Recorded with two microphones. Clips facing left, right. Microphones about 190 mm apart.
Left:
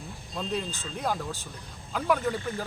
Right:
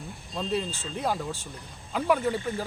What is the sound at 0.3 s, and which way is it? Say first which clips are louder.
Speech: right 2 dB; 5° right (ahead or behind).